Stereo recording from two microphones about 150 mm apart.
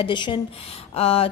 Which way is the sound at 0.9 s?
40° left (ahead or behind).